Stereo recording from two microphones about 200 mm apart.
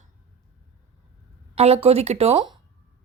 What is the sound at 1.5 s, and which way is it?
Speech, 30° right (ahead or behind).